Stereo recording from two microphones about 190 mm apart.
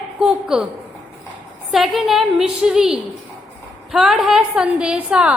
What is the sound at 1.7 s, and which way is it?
A woman's voice, centre (ahead or behind).